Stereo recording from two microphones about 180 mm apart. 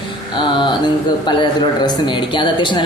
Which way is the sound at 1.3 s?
25° left (ahead or behind).